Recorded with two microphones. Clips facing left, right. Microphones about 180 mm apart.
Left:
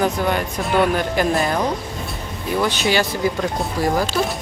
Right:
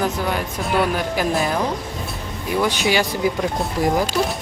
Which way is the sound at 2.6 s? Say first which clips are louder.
Even; 15° right (ahead or behind).